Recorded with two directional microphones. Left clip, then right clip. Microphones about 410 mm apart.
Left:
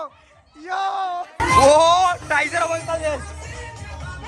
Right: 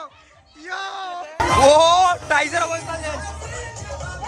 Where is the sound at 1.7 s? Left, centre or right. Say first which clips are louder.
Right 1 dB; centre.